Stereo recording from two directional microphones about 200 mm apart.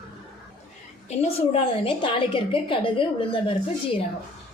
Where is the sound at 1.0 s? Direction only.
30° left (ahead or behind).